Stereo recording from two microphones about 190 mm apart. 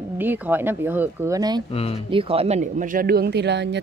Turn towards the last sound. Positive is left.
turn(degrees=-65)  # may be behind; listen again after turning